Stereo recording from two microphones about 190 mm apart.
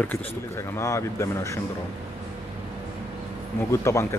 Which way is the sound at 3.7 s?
15° left (ahead or behind).